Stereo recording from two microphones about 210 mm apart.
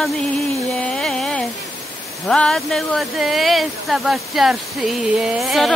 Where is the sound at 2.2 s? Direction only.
5° left (ahead or behind).